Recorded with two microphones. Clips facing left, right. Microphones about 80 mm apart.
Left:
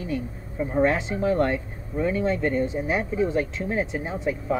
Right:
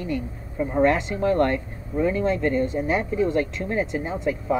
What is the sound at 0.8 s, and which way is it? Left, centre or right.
Speech, centre.